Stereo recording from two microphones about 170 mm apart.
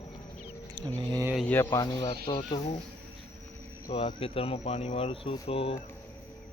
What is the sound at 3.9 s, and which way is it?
Speech, 35° left (ahead or behind).